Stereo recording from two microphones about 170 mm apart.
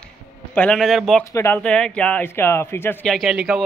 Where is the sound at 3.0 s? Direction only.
Centre (ahead or behind).